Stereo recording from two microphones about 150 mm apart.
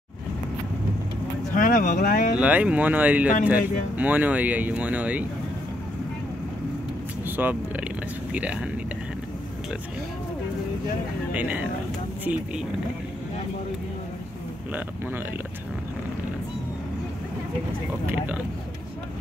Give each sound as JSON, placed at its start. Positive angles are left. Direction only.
{"t": 1.5, "sound": "speech", "side_deg": 60}
{"t": 2.0, "sound": "speech", "side_deg": 75}
{"t": 2.3, "sound": "speech", "side_deg": -10}
{"t": 7.2, "sound": "speech", "side_deg": -10}
{"t": 11.3, "sound": "speech", "side_deg": -10}
{"t": 14.7, "sound": "speech", "side_deg": -15}
{"t": 18.1, "sound": "speech", "side_deg": -10}